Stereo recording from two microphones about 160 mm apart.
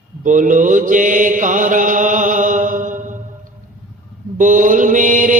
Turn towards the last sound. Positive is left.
turn(degrees=-50)  # may be behind; listen again after turning